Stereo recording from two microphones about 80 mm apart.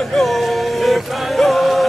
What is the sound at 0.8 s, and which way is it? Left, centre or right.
Music, centre.